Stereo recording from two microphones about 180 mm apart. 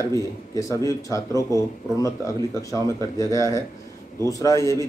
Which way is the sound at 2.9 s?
20° right (ahead or behind).